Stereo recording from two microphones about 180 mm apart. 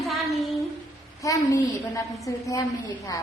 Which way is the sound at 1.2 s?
20° left (ahead or behind).